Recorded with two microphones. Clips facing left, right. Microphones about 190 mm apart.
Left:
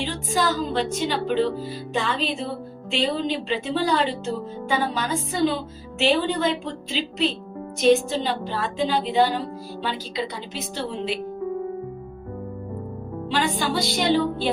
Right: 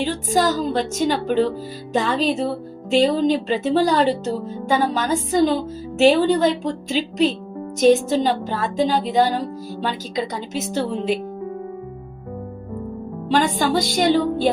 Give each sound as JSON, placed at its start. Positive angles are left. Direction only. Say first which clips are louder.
{"t": 0.0, "sound": "music", "louder": "right 5 dB", "side_deg": -40}
{"t": 1.3, "sound": "speech", "louder": "right 3 dB", "side_deg": -45}
{"t": 2.9, "sound": "music", "louder": "right 8 dB", "side_deg": -45}
{"t": 13.2, "sound": "music", "louder": "right 5 dB", "side_deg": -45}